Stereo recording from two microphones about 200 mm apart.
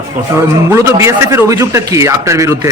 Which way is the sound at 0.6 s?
15° right (ahead or behind).